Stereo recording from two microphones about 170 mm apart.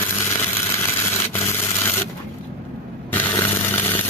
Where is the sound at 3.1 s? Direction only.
10° left (ahead or behind).